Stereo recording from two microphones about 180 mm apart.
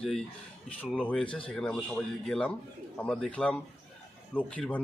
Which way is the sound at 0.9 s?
5° left (ahead or behind).